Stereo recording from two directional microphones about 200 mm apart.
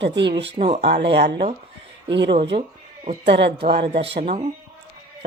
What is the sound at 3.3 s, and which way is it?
Speech, 60° right (ahead or behind).